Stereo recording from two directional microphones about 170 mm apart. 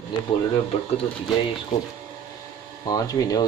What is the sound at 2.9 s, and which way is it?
Speech, 20° left (ahead or behind).